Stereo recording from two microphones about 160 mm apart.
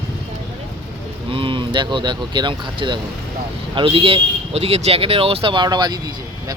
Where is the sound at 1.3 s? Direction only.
30° right (ahead or behind).